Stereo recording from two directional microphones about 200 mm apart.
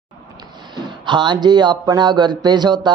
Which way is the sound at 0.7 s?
20° right (ahead or behind).